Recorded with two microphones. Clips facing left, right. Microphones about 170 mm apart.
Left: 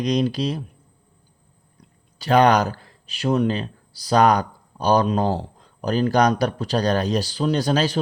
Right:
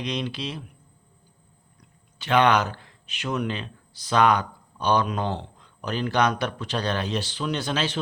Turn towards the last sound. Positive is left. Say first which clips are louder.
# left 7 dB
turn(degrees=40)  # may be behind; listen again after turning